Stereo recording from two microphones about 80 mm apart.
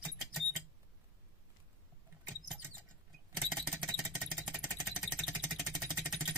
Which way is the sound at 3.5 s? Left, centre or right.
Centre.